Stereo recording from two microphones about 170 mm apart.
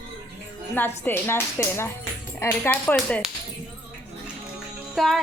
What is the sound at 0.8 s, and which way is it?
Speech, 15° left (ahead or behind).